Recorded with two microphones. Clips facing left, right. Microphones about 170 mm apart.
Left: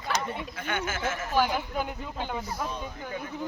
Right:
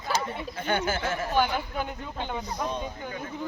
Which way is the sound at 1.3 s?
5° left (ahead or behind).